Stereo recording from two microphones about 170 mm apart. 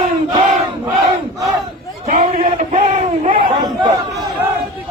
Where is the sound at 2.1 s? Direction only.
45° right (ahead or behind).